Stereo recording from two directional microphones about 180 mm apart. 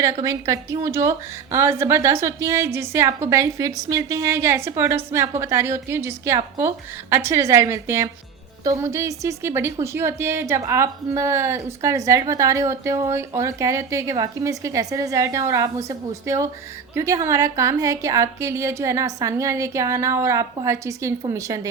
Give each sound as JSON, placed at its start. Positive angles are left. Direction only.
{"t": 0.0, "sound": "a woman's voice", "side_deg": -20}